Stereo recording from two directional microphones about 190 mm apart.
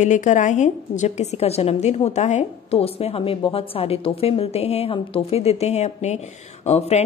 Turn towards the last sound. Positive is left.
turn(degrees=35)  # may be behind; listen again after turning